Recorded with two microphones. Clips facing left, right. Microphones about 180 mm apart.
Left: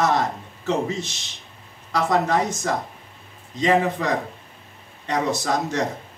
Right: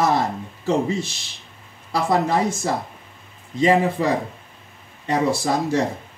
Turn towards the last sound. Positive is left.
turn(degrees=-10)  # may be behind; listen again after turning